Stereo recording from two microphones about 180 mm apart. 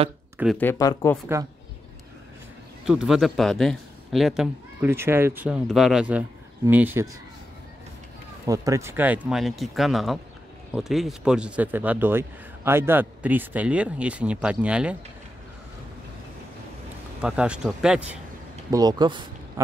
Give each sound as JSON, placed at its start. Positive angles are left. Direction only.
{"t": 0.6, "sound": "speech", "side_deg": 15}
{"t": 2.8, "sound": "speech", "side_deg": -5}
{"t": 4.8, "sound": "speech", "side_deg": -15}
{"t": 8.5, "sound": "speech", "side_deg": -15}
{"t": 17.2, "sound": "speech", "side_deg": -5}
{"t": 18.7, "sound": "speech", "side_deg": -20}